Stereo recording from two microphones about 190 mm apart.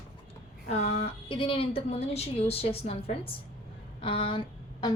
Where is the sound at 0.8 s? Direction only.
60° left (ahead or behind).